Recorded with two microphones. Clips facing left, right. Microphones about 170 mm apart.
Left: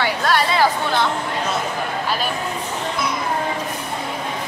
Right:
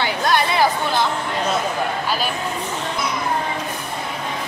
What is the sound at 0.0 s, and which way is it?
Chatter, 20° right (ahead or behind).